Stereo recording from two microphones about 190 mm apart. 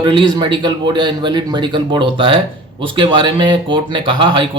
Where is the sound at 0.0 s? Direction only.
25° right (ahead or behind).